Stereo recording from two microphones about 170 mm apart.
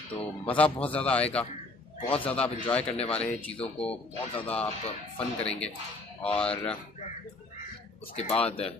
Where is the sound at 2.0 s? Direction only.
35° left (ahead or behind).